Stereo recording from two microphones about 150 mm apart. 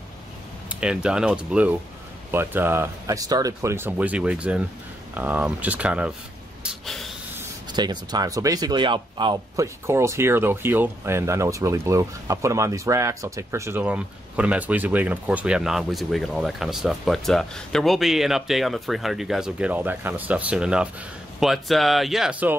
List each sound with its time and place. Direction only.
0.7 s speech: 5° right (ahead or behind)
6.6 s snort: centre (ahead or behind)
7.7 s speech: 30° right (ahead or behind)
9.6 s speech: 20° right (ahead or behind)